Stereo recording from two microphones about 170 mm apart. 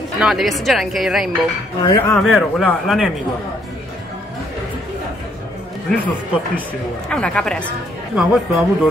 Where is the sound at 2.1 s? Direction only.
5° left (ahead or behind).